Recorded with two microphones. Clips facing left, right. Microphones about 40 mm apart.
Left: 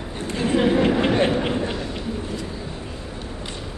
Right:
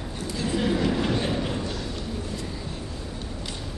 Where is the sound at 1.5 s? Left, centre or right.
Left.